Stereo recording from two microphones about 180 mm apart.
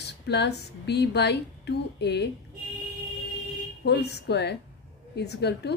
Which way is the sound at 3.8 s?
65° left (ahead or behind).